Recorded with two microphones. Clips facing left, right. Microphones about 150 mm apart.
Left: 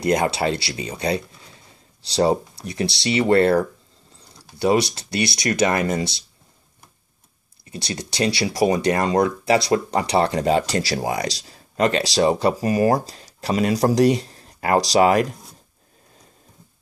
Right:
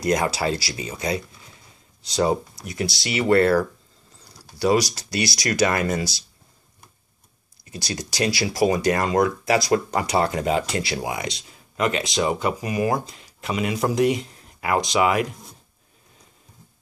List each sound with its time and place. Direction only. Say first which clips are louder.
0.0 s speech: left 2 dB; 25° left (ahead or behind)
7.7 s speech: left 1 dB; 25° left (ahead or behind)